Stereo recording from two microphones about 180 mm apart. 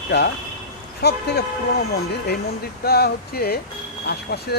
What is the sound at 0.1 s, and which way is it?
Speech, 70° left (ahead or behind).